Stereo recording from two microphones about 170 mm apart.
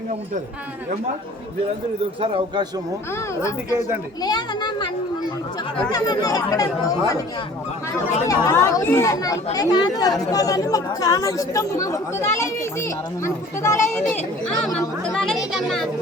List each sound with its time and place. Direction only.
2.2 s a man's voice: 35° right (ahead or behind)
4.2 s speech: 25° left (ahead or behind)
5.9 s speech: 20° left (ahead or behind)
8.3 s speech: 15° left (ahead or behind)
14.1 s speech: 5° left (ahead or behind)
15.1 s children playing: 5° left (ahead or behind)
15.5 s speech: centre (ahead or behind)